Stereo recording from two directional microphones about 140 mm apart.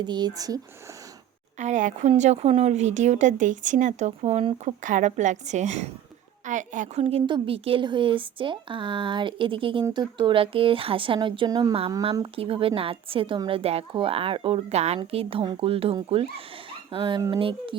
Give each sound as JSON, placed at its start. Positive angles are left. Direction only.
{"t": 0.0, "sound": "speech", "side_deg": -30}
{"t": 1.5, "sound": "a woman's voice", "side_deg": -60}